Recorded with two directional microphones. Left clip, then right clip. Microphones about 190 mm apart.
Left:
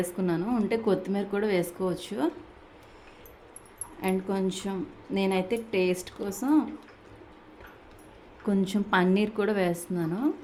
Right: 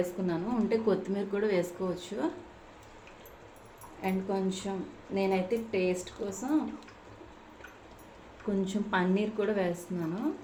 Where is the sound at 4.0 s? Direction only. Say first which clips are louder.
Left 3 dB; 45° left (ahead or behind).